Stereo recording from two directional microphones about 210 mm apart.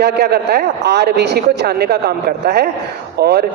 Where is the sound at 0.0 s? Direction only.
50° right (ahead or behind).